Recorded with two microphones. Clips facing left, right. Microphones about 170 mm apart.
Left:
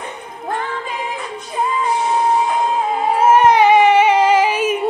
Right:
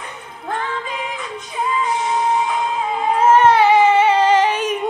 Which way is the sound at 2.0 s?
40° left (ahead or behind).